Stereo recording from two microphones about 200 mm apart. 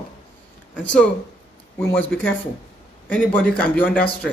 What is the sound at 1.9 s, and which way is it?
Speech, 10° left (ahead or behind).